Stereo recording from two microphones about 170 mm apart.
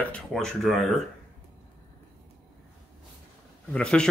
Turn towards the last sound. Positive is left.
turn(degrees=5)  # may be behind; listen again after turning